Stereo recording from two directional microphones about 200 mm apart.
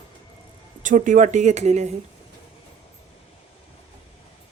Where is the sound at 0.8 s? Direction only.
40° right (ahead or behind).